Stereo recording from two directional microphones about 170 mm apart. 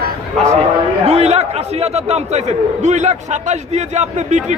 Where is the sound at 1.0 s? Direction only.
40° right (ahead or behind).